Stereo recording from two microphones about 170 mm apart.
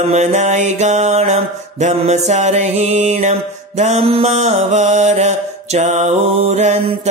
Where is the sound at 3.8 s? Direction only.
40° right (ahead or behind).